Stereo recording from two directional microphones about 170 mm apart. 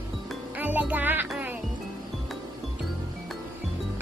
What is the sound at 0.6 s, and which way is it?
Music, 10° right (ahead or behind).